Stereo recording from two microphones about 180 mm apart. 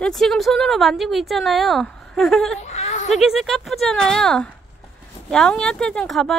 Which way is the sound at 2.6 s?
35° left (ahead or behind).